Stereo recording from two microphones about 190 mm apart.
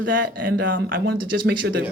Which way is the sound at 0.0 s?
70° right (ahead or behind).